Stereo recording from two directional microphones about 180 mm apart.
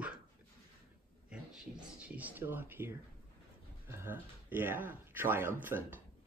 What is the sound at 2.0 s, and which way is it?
Speech, 10° right (ahead or behind).